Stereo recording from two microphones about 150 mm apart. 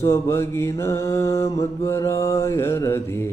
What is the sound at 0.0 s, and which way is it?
Mantra, 20° left (ahead or behind).